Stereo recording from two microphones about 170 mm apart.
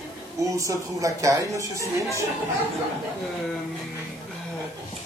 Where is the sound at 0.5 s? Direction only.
20° right (ahead or behind).